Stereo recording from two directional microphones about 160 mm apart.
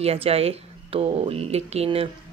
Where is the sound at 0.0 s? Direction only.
35° right (ahead or behind).